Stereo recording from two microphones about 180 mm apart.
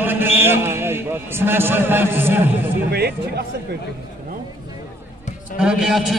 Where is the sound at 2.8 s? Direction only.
60° right (ahead or behind).